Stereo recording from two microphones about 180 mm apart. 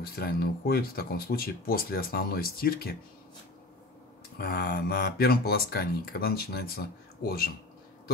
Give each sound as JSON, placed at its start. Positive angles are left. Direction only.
{"t": 0.0, "sound": "speech", "side_deg": 55}
{"t": 4.4, "sound": "speech", "side_deg": 65}